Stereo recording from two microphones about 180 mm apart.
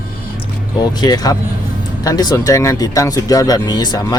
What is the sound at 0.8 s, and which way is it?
Speech, 20° left (ahead or behind).